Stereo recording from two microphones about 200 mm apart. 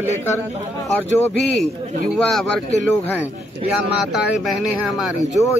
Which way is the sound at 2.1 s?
Centre (ahead or behind).